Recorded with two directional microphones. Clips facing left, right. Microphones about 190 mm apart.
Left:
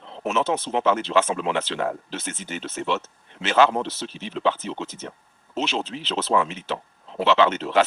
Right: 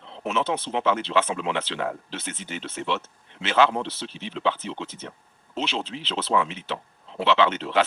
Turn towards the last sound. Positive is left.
turn(degrees=45)  # may be behind; listen again after turning